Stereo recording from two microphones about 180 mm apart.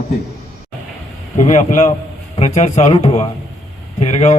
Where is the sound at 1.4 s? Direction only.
45° left (ahead or behind).